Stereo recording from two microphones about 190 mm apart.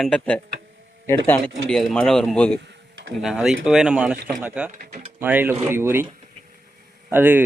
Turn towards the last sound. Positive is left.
turn(degrees=-10)  # may be behind; listen again after turning